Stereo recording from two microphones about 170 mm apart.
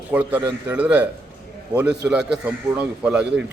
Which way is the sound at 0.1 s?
10° right (ahead or behind).